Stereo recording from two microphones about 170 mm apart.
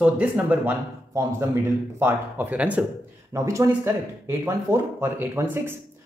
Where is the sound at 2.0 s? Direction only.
10° right (ahead or behind).